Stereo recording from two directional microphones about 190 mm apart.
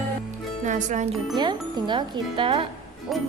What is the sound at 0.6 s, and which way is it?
Speech, 40° right (ahead or behind).